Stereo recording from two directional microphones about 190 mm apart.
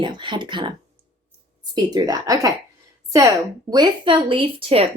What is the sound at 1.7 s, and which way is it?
A woman's voice, 20° right (ahead or behind).